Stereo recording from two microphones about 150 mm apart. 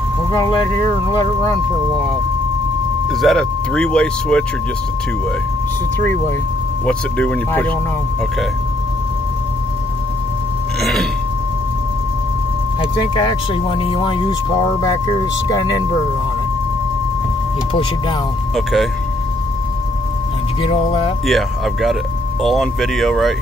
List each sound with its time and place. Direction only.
0.3 s speech: 30° left (ahead or behind)
3.1 s speech: centre (ahead or behind)
5.9 s speech: 15° left (ahead or behind)
10.8 s a sound: centre (ahead or behind)
13.1 s speech: 30° left (ahead or behind)
18.5 s speech: centre (ahead or behind)
20.6 s speech: 35° left (ahead or behind)
21.3 s speech: centre (ahead or behind)